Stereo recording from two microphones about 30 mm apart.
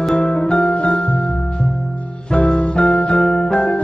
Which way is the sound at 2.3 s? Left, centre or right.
Left.